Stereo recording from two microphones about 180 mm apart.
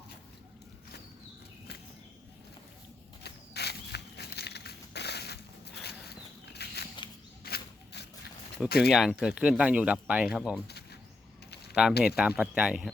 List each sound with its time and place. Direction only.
3.2 s a sound: 65° left (ahead or behind)
8.9 s speech: centre (ahead or behind)
11.7 s speech: centre (ahead or behind)